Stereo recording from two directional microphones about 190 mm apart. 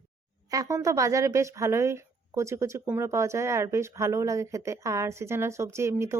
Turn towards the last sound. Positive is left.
turn(degrees=-15)  # may be behind; listen again after turning